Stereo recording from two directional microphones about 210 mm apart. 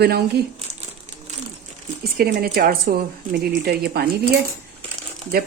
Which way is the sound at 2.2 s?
45° right (ahead or behind).